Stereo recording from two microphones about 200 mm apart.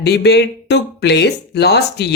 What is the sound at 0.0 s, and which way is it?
Speech, 55° left (ahead or behind).